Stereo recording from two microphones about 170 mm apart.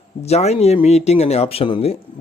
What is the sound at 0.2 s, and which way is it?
Speech, 40° left (ahead or behind).